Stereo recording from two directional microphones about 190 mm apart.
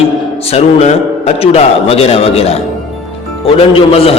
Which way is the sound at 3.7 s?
30° left (ahead or behind).